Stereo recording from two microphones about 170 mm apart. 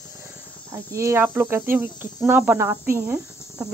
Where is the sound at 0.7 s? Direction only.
15° right (ahead or behind).